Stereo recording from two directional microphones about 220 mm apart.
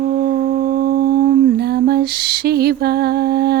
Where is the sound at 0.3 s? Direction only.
40° right (ahead or behind).